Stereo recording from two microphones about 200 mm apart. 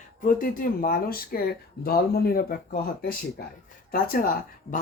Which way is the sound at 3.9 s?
45° left (ahead or behind).